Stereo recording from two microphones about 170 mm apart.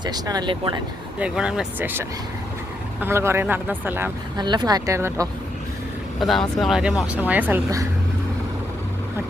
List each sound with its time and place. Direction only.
0.0 s speech: 25° right (ahead or behind)
1.2 s speech: 5° right (ahead or behind)
4.4 s speech: 25° right (ahead or behind)
6.1 s speech: centre (ahead or behind)